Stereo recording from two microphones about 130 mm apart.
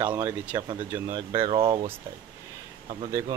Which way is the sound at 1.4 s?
45° right (ahead or behind).